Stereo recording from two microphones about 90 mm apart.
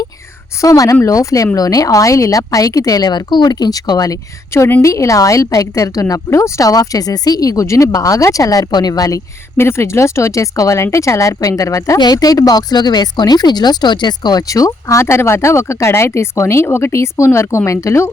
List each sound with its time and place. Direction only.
0.6 s speech: 40° left (ahead or behind)
4.5 s speech: 30° left (ahead or behind)
9.6 s speech: 30° left (ahead or behind)
11.9 s speech: 50° left (ahead or behind); by 18.1 s 35° left (ahead or behind)